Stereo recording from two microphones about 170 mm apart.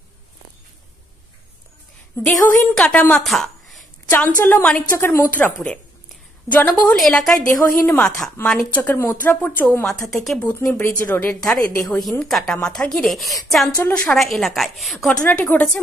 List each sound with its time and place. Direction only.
2.2 s a woman's voice: 10° left (ahead or behind)
7.4 s speech: 15° left (ahead or behind)
10.5 s a woman's voice: 15° left (ahead or behind)
15.2 s speech: 10° left (ahead or behind)